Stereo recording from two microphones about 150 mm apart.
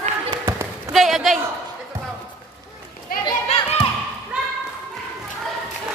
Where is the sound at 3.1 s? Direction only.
75° left (ahead or behind).